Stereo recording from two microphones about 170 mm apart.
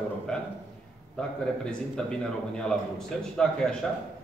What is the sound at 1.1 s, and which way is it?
A man's voice, 5° left (ahead or behind).